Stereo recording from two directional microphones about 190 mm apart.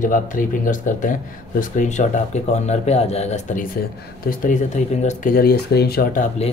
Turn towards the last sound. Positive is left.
turn(degrees=55)  # may be behind; listen again after turning